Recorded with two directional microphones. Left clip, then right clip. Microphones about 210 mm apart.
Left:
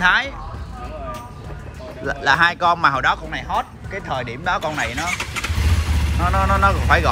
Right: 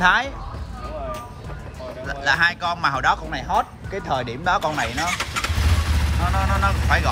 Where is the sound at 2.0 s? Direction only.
5° right (ahead or behind).